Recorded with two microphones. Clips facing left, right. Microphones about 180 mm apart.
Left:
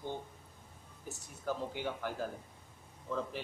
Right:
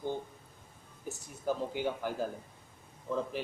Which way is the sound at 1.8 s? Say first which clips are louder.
Right 4 dB; 15° right (ahead or behind).